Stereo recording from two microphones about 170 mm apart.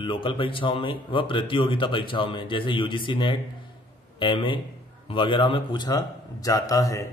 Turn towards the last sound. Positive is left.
turn(degrees=20)  # may be behind; listen again after turning